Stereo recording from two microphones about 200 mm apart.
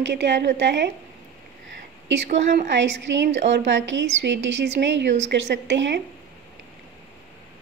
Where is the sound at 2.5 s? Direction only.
60° right (ahead or behind).